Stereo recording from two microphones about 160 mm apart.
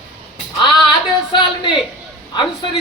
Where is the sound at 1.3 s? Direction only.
30° left (ahead or behind).